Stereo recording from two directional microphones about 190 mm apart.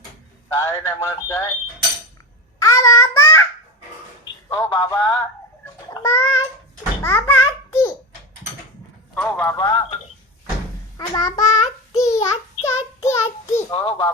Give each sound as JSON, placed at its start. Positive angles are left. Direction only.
{"t": 0.5, "sound": "speech", "side_deg": 15}
{"t": 2.6, "sound": "babbling", "side_deg": 20}
{"t": 4.4, "sound": "speech", "side_deg": 10}
{"t": 5.9, "sound": "bathtub", "side_deg": 15}
{"t": 7.0, "sound": "a sound", "side_deg": 10}
{"t": 9.3, "sound": "speech", "side_deg": 15}
{"t": 10.9, "sound": "speech", "side_deg": 20}
{"t": 11.9, "sound": "child singing", "side_deg": 15}
{"t": 13.7, "sound": "speech", "side_deg": 25}